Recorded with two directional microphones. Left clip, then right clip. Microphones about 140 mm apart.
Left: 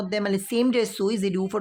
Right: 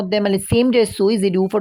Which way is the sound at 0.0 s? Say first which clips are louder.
Right 7 dB; 40° right (ahead or behind).